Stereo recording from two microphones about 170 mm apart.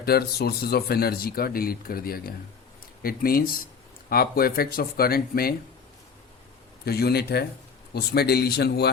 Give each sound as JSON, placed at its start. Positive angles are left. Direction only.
{"t": 0.0, "sound": "speech", "side_deg": 65}
{"t": 6.8, "sound": "speech", "side_deg": 70}